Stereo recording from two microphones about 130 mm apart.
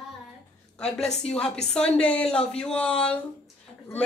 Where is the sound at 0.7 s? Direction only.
5° left (ahead or behind).